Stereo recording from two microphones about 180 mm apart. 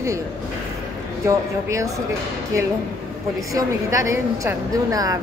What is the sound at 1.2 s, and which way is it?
Speech, 15° right (ahead or behind).